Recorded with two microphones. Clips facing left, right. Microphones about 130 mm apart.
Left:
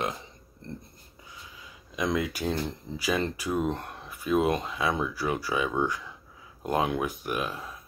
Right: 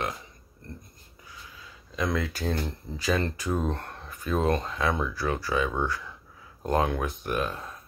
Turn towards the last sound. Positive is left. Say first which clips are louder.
# right 2 dB
turn(degrees=10)  # may be behind; listen again after turning